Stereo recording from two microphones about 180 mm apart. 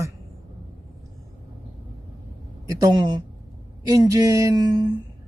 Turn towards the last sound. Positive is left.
turn(degrees=-25)  # may be behind; listen again after turning